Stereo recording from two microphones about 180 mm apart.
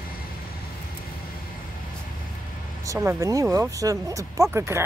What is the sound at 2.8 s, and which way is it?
Speech, 15° right (ahead or behind).